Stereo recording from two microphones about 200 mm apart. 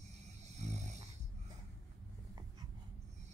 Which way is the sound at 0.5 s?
35° right (ahead or behind).